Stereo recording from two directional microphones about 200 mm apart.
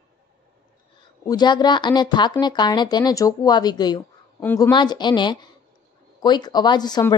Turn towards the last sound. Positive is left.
turn(degrees=20)  # may be behind; listen again after turning